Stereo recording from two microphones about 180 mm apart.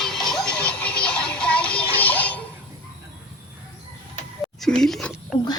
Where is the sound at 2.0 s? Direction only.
10° left (ahead or behind).